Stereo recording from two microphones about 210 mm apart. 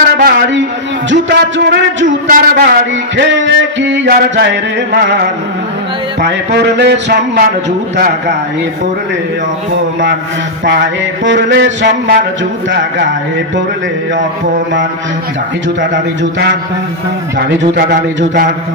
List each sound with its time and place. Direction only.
0.2 s music: 55° right (ahead or behind)
2.0 s a man's voice: 40° right (ahead or behind)
3.2 s music: 60° right (ahead or behind)
6.2 s music: 55° right (ahead or behind)
11.2 s music: 60° right (ahead or behind)
15.8 s music: 60° right (ahead or behind)
17.7 s a man's voice: 45° right (ahead or behind)